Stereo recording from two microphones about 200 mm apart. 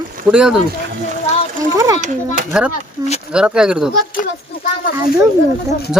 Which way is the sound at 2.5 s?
5° right (ahead or behind).